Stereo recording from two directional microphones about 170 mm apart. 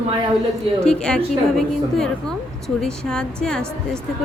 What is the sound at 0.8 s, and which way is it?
A woman's voice, 5° left (ahead or behind).